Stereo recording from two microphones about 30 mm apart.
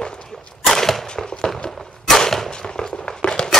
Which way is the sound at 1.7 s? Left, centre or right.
Centre.